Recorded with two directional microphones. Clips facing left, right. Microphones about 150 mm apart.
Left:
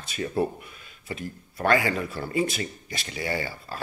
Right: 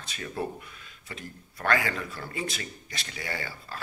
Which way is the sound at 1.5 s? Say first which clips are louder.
Left 5 dB; 25° left (ahead or behind).